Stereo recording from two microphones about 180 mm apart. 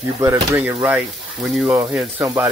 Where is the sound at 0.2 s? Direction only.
15° right (ahead or behind).